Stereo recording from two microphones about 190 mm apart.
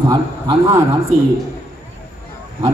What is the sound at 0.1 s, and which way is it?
Speech, 20° right (ahead or behind).